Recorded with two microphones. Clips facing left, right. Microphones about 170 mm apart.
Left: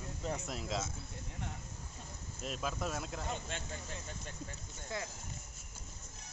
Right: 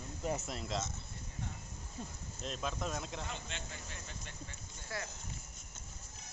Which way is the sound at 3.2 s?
45° left (ahead or behind).